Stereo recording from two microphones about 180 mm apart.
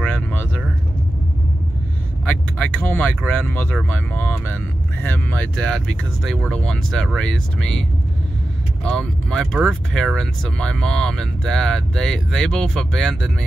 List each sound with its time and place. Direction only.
0.0 s a sound: 10° left (ahead or behind)
2.2 s speech: 5° left (ahead or behind)
8.8 s speech: 5° left (ahead or behind)